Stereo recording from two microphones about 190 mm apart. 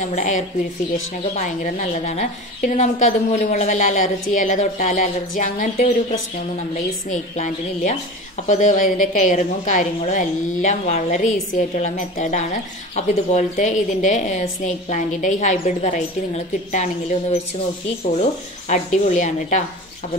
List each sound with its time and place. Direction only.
0.0 s a woman's voice: 40° left (ahead or behind)
7.1 s a woman's voice: 40° left (ahead or behind)
18.7 s a woman's voice: 40° left (ahead or behind)